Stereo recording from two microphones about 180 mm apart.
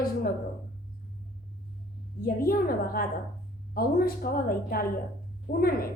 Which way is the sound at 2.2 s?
55° left (ahead or behind).